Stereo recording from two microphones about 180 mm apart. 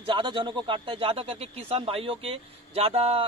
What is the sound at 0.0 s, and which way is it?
Speech, 25° right (ahead or behind).